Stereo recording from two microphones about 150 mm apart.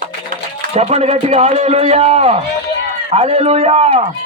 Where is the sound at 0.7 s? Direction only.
45° right (ahead or behind).